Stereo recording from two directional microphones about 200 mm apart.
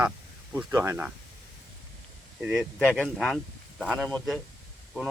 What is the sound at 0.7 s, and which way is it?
Speech, 15° right (ahead or behind).